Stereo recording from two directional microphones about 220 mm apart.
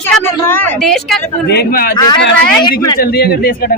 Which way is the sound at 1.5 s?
45° left (ahead or behind).